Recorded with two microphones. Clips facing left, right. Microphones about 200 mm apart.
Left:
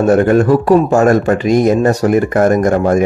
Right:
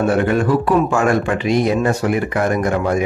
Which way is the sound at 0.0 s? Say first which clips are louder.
Left 6 dB; 45° left (ahead or behind).